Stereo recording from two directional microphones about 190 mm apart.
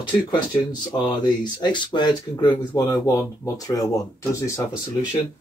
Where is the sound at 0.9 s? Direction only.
20° left (ahead or behind).